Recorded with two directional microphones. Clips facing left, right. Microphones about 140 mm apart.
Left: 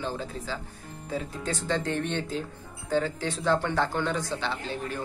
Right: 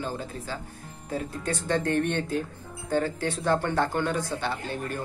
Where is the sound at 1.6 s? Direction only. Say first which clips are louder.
Right 4 dB; 55° right (ahead or behind).